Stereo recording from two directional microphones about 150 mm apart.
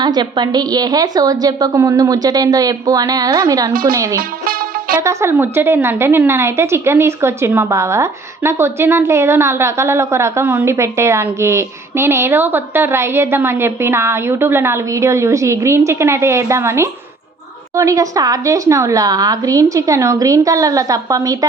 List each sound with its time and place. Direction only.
0.0 s a woman's voice: 30° right (ahead or behind)
3.7 s speech: 75° right (ahead or behind)
3.9 s a woman's voice: 20° right (ahead or behind)
4.2 s music: 75° right (ahead or behind)
4.9 s a woman's voice: 15° right (ahead or behind)